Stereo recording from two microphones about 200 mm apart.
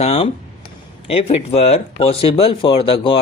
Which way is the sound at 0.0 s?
30° left (ahead or behind).